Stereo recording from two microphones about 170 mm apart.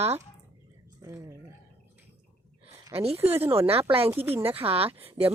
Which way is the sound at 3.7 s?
35° right (ahead or behind).